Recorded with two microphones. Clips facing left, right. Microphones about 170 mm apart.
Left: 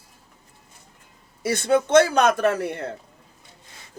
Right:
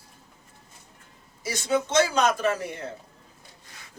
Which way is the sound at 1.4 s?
60° left (ahead or behind).